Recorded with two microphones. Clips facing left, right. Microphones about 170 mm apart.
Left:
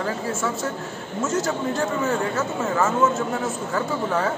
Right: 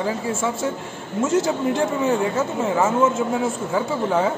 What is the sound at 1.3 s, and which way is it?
Speech, 25° right (ahead or behind).